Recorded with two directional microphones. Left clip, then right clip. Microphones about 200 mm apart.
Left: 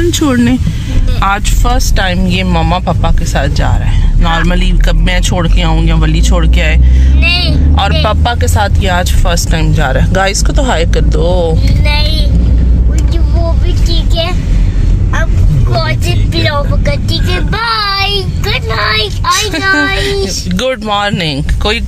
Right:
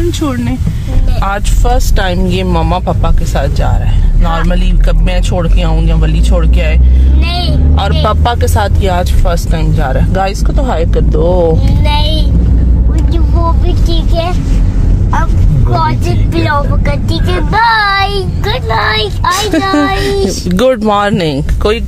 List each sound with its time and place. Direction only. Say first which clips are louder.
0.1 s speech: left 5 dB; 15° left (ahead or behind)
1.2 s speech: left 3 dB; centre (ahead or behind)
8.0 s speech: right 1 dB; 15° right (ahead or behind)
17.3 s a child's voice: right 6 dB; 25° right (ahead or behind)
19.3 s speech: left 2 dB; 35° right (ahead or behind)